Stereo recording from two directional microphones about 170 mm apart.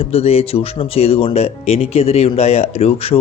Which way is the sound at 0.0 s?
35° left (ahead or behind).